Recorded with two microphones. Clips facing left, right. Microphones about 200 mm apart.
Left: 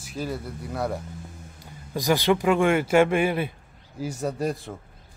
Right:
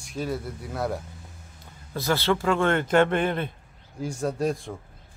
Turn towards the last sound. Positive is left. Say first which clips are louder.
# right 1 dB
turn(degrees=0)  # may be behind; listen again after turning